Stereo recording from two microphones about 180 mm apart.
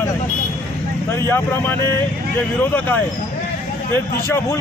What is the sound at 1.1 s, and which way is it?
Speech, 15° left (ahead or behind).